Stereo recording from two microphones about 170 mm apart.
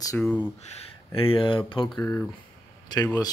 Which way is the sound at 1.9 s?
15° left (ahead or behind).